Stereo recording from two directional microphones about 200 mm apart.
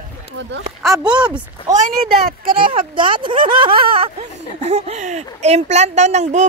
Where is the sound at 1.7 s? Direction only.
45° right (ahead or behind).